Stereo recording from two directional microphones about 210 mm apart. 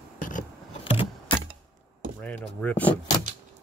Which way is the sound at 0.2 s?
40° left (ahead or behind).